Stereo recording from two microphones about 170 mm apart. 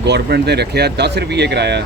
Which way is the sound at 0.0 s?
80° right.